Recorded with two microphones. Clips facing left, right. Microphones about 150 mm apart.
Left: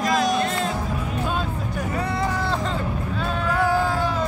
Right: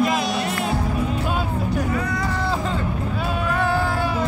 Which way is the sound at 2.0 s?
30° left (ahead or behind).